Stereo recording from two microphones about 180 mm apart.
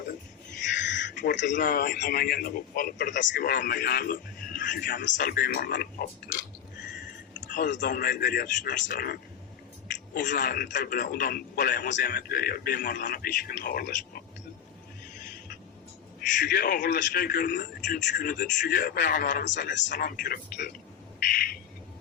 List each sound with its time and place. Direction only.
0.8 s a sound: 80° left
1.3 s speech: 80° left
1.5 s a man's voice: 50° left (ahead or behind)
7.7 s a man's voice: 45° left (ahead or behind)
16.4 s a man's voice: 55° left (ahead or behind)
19.6 s speech: 80° left
19.9 s a man's voice: 55° left (ahead or behind)